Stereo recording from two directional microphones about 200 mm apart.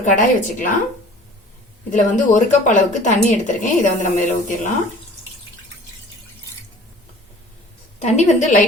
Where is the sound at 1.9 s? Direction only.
40° left (ahead or behind).